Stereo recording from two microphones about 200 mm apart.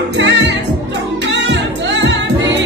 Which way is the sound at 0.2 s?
65° right (ahead or behind).